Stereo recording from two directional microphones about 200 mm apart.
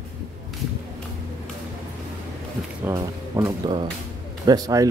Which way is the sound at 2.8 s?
20° right (ahead or behind).